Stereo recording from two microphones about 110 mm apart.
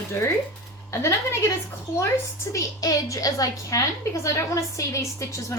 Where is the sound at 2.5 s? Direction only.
30° left (ahead or behind).